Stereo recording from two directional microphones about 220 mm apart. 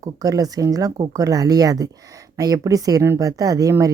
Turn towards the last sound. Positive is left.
turn(degrees=-15)  # may be behind; listen again after turning